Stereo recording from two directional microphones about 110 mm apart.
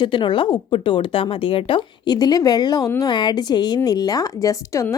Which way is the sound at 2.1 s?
35° left (ahead or behind).